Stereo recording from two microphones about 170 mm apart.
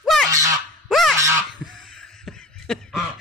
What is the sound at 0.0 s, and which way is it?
Honk, centre (ahead or behind).